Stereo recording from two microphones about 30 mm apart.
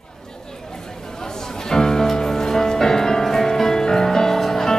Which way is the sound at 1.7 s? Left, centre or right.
Centre.